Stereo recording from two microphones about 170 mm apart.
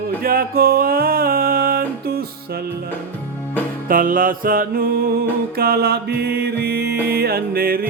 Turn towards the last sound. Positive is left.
turn(degrees=-60)  # may be behind; listen again after turning